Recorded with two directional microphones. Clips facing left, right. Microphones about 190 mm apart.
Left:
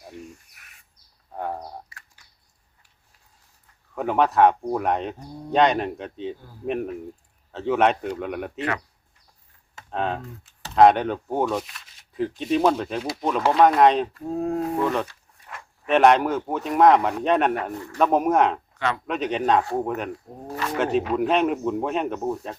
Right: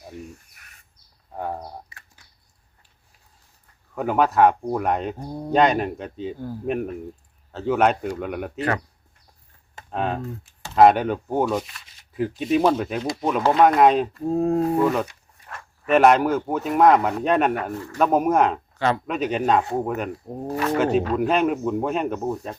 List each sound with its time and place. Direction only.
0.5 s bird: centre (ahead or behind)
1.3 s speech: 5° right (ahead or behind)
3.9 s speech: 5° right (ahead or behind)
9.9 s speech: 5° right (ahead or behind)
13.0 s speech: 5° left (ahead or behind)
14.3 s speech: 30° right (ahead or behind)
14.8 s speech: 5° right (ahead or behind)